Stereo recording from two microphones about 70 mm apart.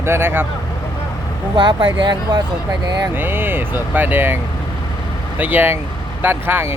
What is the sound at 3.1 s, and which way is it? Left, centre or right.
Speech, right.